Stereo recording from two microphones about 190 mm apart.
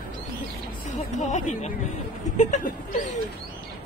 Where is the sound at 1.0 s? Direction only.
35° left (ahead or behind).